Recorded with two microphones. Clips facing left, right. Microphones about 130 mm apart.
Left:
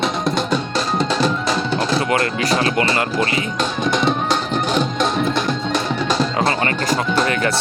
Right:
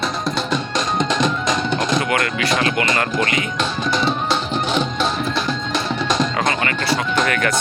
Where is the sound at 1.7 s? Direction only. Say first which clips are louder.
Left 2 dB; 35° left (ahead or behind).